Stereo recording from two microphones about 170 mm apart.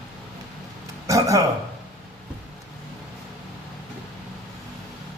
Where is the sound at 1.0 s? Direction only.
20° right (ahead or behind).